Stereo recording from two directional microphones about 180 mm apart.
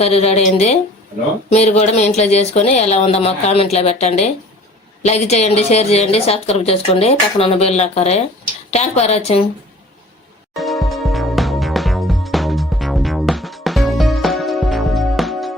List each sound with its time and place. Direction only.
0.0 s a woman's voice: 35° left (ahead or behind)
10.5 s music: centre (ahead or behind)